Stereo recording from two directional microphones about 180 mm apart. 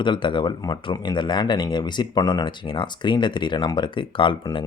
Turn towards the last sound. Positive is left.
turn(degrees=25)  # may be behind; listen again after turning